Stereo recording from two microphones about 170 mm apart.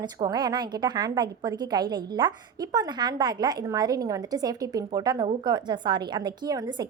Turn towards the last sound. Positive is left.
turn(degrees=-20)  # may be behind; listen again after turning